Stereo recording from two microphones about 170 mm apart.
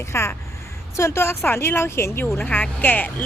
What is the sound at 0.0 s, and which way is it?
A woman's voice, 15° left (ahead or behind).